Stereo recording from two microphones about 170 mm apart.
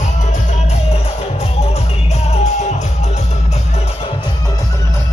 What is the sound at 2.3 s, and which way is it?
Music, 40° left (ahead or behind).